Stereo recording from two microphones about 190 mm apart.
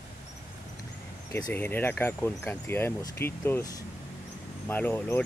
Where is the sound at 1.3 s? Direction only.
15° left (ahead or behind).